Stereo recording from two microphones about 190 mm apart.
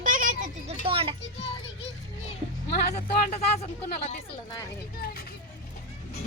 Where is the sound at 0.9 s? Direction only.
30° right (ahead or behind).